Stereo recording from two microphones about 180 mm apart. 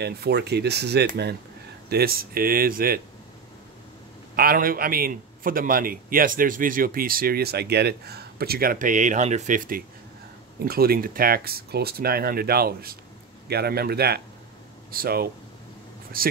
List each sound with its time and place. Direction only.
0.0 s speech: 65° right (ahead or behind)
4.4 s a man's voice: 55° right (ahead or behind)